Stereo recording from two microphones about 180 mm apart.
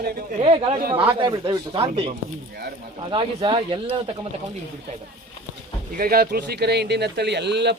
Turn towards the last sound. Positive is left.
turn(degrees=-70)  # may be behind; listen again after turning